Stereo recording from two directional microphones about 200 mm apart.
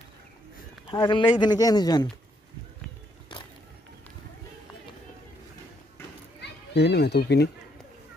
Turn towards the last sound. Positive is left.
turn(degrees=55)  # may be behind; listen again after turning